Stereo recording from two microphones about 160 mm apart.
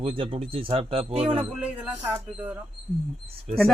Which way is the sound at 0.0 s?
35° right (ahead or behind).